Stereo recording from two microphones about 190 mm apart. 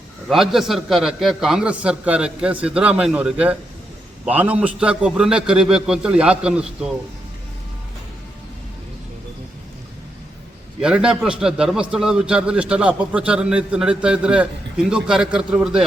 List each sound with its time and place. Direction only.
0.3 s a man's voice: centre (ahead or behind)
10.8 s a man's voice: 5° right (ahead or behind)